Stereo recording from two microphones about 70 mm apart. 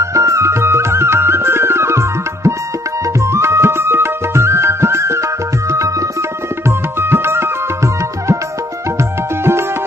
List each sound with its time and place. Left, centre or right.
0.0 s music: right
7.0 s music: right